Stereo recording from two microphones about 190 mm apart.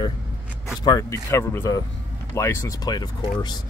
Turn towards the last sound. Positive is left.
turn(degrees=20)  # may be behind; listen again after turning